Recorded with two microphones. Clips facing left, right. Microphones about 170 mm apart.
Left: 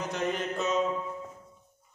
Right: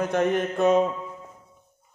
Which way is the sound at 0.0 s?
60° right (ahead or behind).